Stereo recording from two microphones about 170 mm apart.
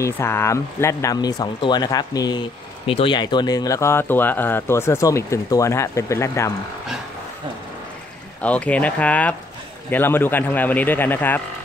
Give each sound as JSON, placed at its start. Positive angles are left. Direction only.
{"t": 0.0, "sound": "speech", "side_deg": 15}
{"t": 8.4, "sound": "speech", "side_deg": 10}